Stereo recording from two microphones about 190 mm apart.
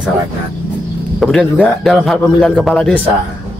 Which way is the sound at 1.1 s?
Centre (ahead or behind).